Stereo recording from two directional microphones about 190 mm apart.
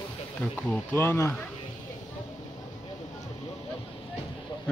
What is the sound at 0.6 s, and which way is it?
Speech, 15° left (ahead or behind).